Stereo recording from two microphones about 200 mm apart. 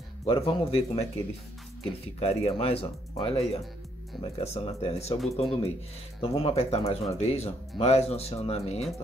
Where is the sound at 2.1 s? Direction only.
30° left (ahead or behind).